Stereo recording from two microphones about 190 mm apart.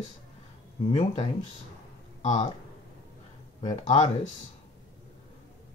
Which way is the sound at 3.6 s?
25° left (ahead or behind).